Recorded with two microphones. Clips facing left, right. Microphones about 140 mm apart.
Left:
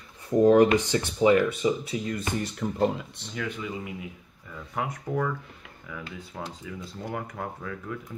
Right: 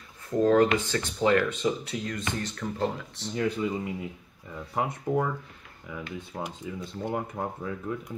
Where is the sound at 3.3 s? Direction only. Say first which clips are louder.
Right 5 dB; 35° right (ahead or behind).